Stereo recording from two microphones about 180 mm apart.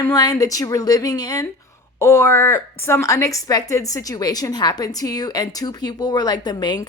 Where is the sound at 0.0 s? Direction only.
20° left (ahead or behind).